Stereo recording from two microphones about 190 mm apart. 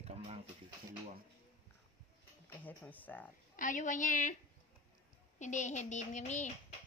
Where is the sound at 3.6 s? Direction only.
45° left (ahead or behind).